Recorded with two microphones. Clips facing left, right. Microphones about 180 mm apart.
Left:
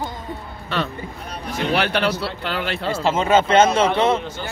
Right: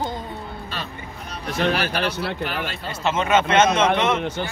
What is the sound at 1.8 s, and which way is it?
Speech, 65° left (ahead or behind).